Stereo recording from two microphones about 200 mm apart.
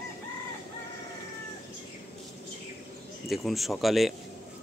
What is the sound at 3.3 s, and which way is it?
Speech, centre (ahead or behind).